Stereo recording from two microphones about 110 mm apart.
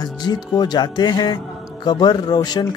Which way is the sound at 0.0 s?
40° left (ahead or behind).